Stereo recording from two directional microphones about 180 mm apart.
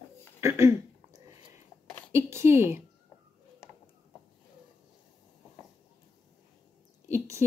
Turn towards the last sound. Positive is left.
turn(degrees=-15)  # may be behind; listen again after turning